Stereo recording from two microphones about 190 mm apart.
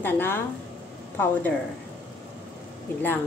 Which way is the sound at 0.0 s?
10° left (ahead or behind).